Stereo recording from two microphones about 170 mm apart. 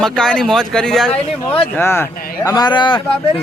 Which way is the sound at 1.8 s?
15° left (ahead or behind).